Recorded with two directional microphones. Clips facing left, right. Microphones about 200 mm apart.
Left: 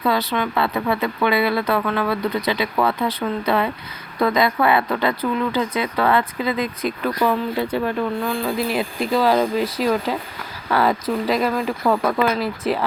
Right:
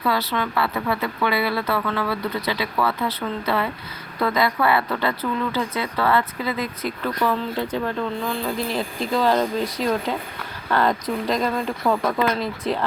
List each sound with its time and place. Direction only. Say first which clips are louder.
0.0 s speech: left 3 dB; 20° left (ahead or behind)